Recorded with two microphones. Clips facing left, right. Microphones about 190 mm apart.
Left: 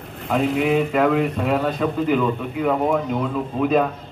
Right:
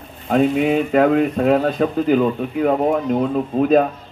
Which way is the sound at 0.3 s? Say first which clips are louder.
Right 3 dB; 45° right (ahead or behind).